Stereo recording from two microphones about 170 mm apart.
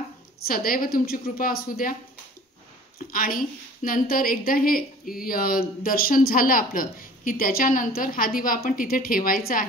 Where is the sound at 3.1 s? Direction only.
55° left (ahead or behind).